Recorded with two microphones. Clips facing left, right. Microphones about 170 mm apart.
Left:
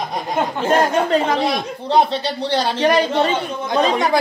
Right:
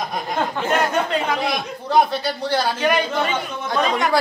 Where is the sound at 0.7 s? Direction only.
40° left (ahead or behind).